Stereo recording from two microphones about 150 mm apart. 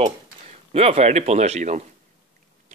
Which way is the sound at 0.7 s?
40° right (ahead or behind).